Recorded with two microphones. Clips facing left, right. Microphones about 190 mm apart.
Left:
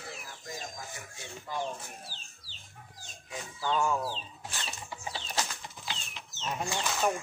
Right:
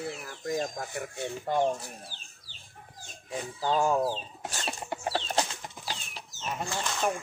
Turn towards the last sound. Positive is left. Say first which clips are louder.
# even
turn(degrees=5)  # may be behind; listen again after turning